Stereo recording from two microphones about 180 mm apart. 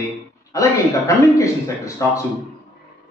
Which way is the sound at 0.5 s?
15° left (ahead or behind).